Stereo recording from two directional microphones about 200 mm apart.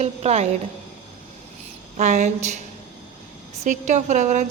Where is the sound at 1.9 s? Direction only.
35° right (ahead or behind).